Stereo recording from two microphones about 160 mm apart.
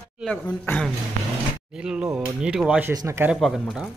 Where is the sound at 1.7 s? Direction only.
5° right (ahead or behind).